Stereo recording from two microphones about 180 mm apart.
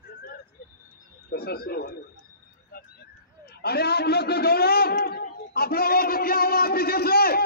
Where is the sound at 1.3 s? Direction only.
60° left (ahead or behind).